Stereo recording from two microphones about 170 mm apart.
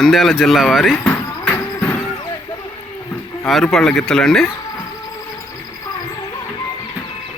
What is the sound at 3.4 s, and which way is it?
Speech, centre (ahead or behind).